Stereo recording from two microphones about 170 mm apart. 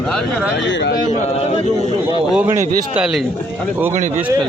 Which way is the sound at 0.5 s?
90° left.